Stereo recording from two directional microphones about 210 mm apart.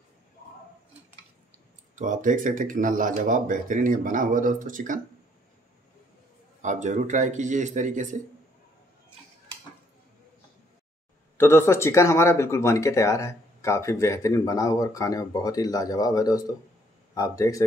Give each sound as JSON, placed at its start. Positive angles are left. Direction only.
{"t": 2.0, "sound": "speech", "side_deg": -35}
{"t": 6.6, "sound": "speech", "side_deg": -35}
{"t": 11.3, "sound": "speech", "side_deg": 10}